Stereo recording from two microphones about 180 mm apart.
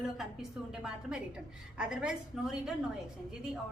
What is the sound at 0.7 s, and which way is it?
A woman's voice, 5° right (ahead or behind).